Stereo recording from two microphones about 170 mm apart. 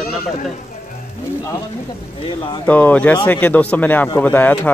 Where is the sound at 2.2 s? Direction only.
30° left (ahead or behind).